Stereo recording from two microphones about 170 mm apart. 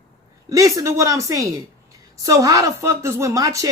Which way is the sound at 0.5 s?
20° right (ahead or behind).